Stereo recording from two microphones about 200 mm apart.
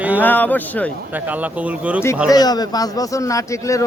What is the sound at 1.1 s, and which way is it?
Speech, 10° right (ahead or behind).